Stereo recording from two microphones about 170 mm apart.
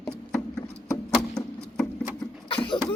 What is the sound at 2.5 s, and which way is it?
Cough, 30° left (ahead or behind).